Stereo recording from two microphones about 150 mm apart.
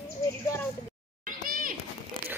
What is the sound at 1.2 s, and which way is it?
Children playing, 65° right (ahead or behind).